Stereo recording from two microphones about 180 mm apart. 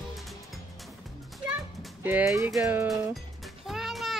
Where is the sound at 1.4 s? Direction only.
10° right (ahead or behind).